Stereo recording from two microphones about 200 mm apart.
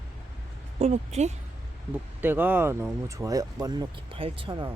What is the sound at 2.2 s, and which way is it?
Speech, 10° right (ahead or behind).